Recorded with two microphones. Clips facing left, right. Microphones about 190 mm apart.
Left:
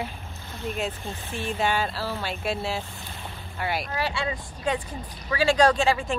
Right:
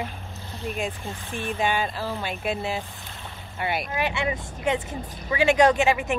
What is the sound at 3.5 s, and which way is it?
Speech, centre (ahead or behind).